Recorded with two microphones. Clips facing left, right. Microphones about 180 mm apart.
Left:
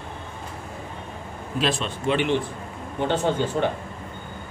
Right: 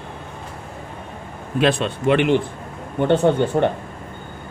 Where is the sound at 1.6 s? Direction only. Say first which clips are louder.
Right 7 dB; 60° right (ahead or behind).